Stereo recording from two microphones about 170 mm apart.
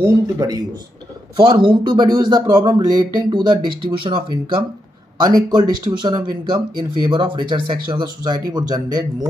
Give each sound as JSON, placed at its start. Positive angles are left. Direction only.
{"t": 0.0, "sound": "speech", "side_deg": -20}